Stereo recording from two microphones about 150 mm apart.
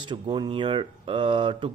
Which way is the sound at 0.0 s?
30° right (ahead or behind).